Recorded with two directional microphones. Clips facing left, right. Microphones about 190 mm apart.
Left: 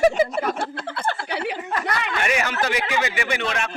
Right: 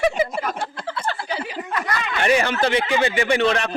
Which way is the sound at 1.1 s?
65° left (ahead or behind).